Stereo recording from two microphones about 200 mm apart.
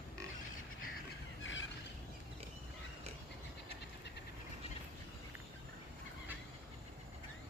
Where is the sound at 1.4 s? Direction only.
70° left (ahead or behind).